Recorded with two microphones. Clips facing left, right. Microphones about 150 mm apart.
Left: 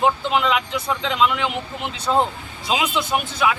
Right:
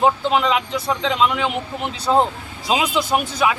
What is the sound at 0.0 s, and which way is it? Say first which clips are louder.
A man's voice: right 2 dB; 35° right (ahead or behind).